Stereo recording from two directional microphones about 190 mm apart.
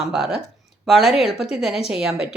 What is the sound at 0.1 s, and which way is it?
Speech, 5° right (ahead or behind).